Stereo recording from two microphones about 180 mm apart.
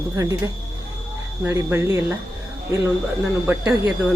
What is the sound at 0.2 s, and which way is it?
Speech, 20° right (ahead or behind).